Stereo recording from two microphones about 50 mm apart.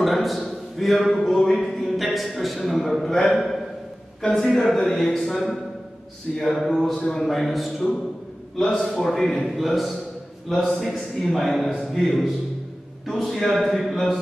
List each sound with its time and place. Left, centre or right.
0.0 s a man's voice: centre
7.0 s a man's voice: centre
7.2 s a man's voice: centre
9.5 s speech: centre
11.0 s a man's voice: centre
13.0 s speech: centre